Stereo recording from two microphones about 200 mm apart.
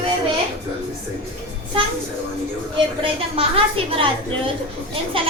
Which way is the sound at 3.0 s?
25° right (ahead or behind).